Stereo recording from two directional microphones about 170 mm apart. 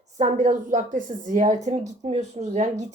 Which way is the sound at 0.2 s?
45° right (ahead or behind).